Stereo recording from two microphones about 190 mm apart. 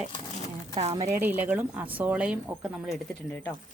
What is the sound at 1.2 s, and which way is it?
Speech, 10° right (ahead or behind).